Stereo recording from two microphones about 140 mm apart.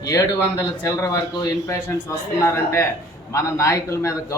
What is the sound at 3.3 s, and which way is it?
A man's voice, 20° left (ahead or behind).